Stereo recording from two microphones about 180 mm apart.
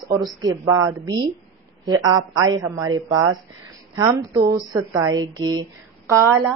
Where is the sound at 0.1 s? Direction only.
20° right (ahead or behind).